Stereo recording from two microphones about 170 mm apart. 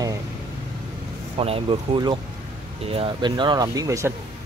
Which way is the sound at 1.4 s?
35° right (ahead or behind).